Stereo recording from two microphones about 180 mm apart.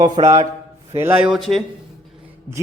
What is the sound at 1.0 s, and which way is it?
Speech, 10° right (ahead or behind).